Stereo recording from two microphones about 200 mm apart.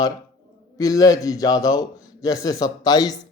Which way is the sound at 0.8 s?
15° left (ahead or behind).